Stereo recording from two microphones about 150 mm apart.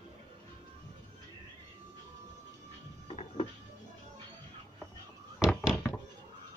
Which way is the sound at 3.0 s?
40° left (ahead or behind).